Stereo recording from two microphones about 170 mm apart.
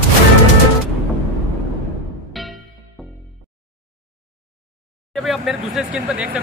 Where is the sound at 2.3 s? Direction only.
Centre (ahead or behind).